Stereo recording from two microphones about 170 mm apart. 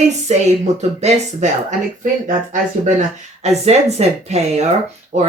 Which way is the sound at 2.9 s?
40° right (ahead or behind).